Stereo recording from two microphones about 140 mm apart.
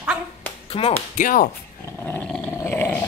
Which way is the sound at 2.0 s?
15° left (ahead or behind).